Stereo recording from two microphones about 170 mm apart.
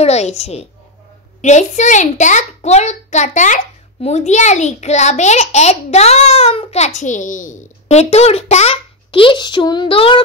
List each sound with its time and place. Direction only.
0.0 s a child's voice: 40° left (ahead or behind)